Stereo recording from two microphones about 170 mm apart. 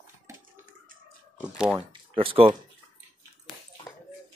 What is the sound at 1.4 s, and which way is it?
Speech, 5° right (ahead or behind).